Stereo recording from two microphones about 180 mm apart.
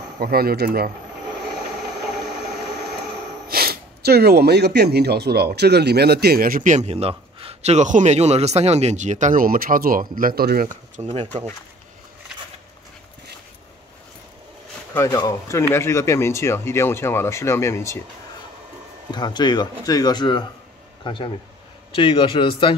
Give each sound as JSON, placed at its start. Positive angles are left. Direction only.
{"t": 0.2, "sound": "speech", "side_deg": -60}
{"t": 3.4, "sound": "speech", "side_deg": -60}
{"t": 11.0, "sound": "speech", "side_deg": -30}
{"t": 15.0, "sound": "speech", "side_deg": 20}
{"t": 19.0, "sound": "speech", "side_deg": 25}